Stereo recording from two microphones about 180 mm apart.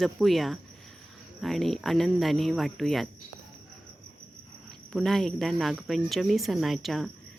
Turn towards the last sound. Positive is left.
turn(degrees=0)  # may be behind; listen again after turning